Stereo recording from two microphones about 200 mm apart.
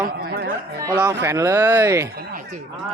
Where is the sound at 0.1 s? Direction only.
50° right (ahead or behind).